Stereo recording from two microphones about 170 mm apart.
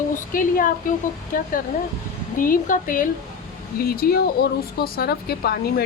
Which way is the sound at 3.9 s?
65° left (ahead or behind).